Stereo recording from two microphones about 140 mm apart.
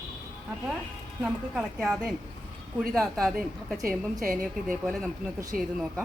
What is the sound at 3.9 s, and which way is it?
Speech, 20° right (ahead or behind).